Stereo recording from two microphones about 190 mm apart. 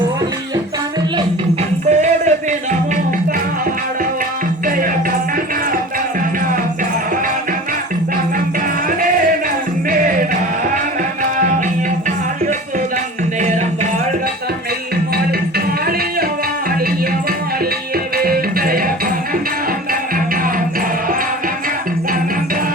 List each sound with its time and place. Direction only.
1.9 s music: 40° right (ahead or behind)
11.2 s music: 45° right (ahead or behind)
15.1 s music: 55° right (ahead or behind)
18.2 s music: 50° right (ahead or behind)
19.9 s music: 50° right (ahead or behind)